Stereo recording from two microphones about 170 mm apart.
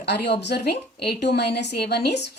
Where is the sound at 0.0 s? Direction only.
80° left.